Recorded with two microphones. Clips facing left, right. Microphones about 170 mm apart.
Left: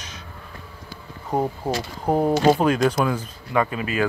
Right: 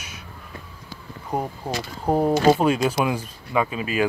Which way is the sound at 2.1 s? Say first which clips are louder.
Even; 5° right (ahead or behind).